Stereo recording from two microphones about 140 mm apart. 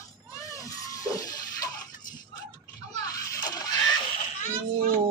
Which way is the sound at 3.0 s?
25° left (ahead or behind).